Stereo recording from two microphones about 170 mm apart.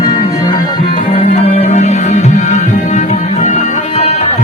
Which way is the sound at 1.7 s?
45° left (ahead or behind).